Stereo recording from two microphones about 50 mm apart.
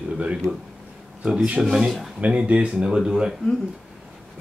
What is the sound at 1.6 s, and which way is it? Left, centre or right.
Speech, centre.